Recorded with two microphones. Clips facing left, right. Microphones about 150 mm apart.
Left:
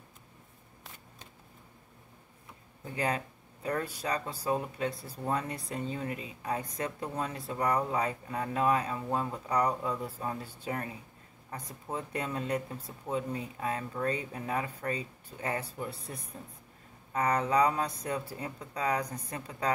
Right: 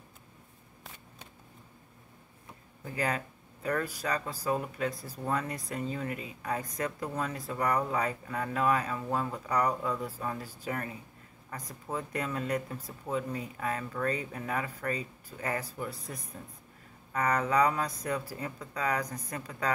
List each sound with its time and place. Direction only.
2.8 s a man's voice: 30° left (ahead or behind)